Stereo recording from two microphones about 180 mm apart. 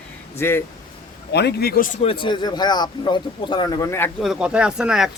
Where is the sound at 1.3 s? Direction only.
65° left (ahead or behind).